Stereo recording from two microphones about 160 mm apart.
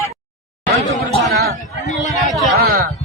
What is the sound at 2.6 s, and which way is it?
Speech, 70° right (ahead or behind).